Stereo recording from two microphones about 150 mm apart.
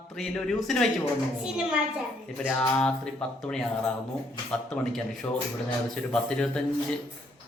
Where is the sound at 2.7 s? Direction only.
5° left (ahead or behind).